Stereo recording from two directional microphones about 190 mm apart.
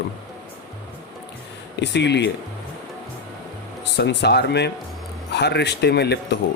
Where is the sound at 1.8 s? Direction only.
65° left (ahead or behind).